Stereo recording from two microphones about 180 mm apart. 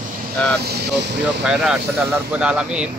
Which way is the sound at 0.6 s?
65° right (ahead or behind).